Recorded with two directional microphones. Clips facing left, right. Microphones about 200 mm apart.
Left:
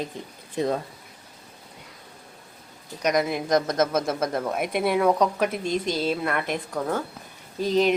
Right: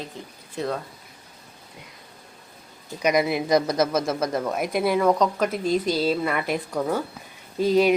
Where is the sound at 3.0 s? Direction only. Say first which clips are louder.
Right 2 dB; 5° right (ahead or behind).